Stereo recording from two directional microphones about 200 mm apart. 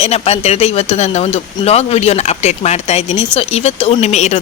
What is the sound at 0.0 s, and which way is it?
Speech, 30° left (ahead or behind).